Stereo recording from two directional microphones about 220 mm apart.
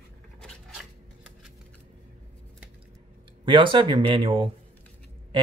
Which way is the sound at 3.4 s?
20° right (ahead or behind).